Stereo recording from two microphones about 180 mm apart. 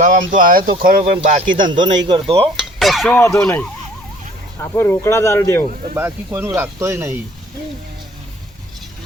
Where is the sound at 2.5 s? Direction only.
Centre (ahead or behind).